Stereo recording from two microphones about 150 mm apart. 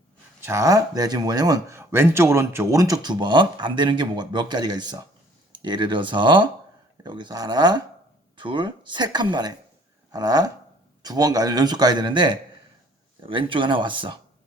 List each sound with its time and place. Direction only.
0.4 s speech: 20° right (ahead or behind)
10.1 s a sound: 25° right (ahead or behind)
11.0 s speech: 25° right (ahead or behind)